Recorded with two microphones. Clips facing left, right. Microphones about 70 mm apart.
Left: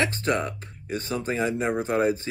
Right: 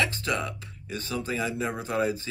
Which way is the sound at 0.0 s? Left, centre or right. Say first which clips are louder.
Left 3 dB; left.